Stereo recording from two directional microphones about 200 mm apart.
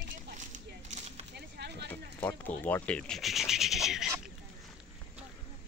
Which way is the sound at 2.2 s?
5° left (ahead or behind).